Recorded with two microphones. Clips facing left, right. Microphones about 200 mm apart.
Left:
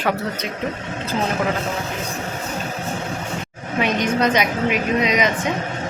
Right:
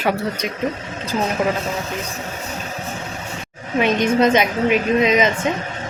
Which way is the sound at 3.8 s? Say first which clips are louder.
Right 3 dB; 25° right (ahead or behind).